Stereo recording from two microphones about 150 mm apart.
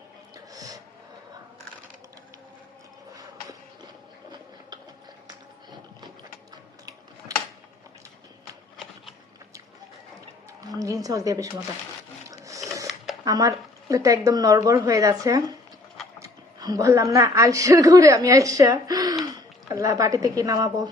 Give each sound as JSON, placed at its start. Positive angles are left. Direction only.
{"t": 0.3, "sound": "music", "side_deg": -25}
{"t": 10.6, "sound": "a sound", "side_deg": -25}
{"t": 13.2, "sound": "a woman's voice", "side_deg": -25}